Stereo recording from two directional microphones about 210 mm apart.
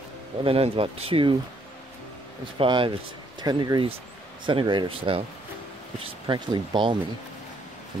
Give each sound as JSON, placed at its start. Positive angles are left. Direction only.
{"t": 0.4, "sound": "speech", "side_deg": -25}
{"t": 2.6, "sound": "speech", "side_deg": -25}